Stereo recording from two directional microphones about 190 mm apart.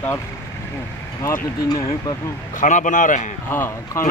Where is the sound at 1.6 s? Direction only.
20° left (ahead or behind).